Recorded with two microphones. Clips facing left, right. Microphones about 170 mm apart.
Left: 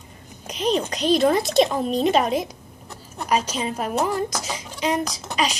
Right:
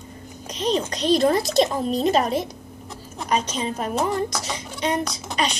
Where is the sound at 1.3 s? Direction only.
35° right (ahead or behind).